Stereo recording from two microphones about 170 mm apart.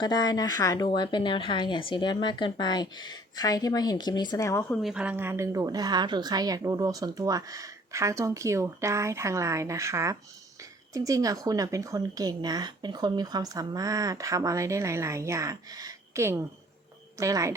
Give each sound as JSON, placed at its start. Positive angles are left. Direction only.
{"t": 0.0, "sound": "a woman's voice", "side_deg": 25}
{"t": 4.8, "sound": "a woman's voice", "side_deg": -5}